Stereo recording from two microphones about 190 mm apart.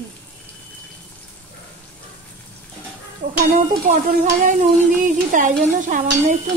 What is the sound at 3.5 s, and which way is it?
A woman's voice, 45° right (ahead or behind).